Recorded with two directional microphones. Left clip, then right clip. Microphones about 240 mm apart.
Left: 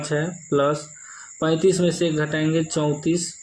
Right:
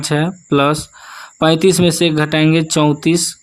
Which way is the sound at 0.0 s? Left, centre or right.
Right.